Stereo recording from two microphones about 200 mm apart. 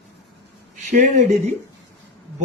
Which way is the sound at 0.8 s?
40° right (ahead or behind).